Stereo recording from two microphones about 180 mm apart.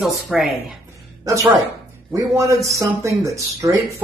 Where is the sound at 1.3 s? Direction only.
20° right (ahead or behind).